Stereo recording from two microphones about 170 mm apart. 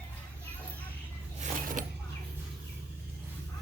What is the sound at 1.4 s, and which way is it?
Mechanisms, 50° right (ahead or behind).